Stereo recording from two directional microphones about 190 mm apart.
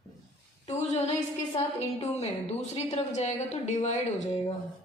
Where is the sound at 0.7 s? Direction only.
30° left (ahead or behind).